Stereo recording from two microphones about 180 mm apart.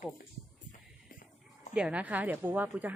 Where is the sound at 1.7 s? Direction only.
5° right (ahead or behind).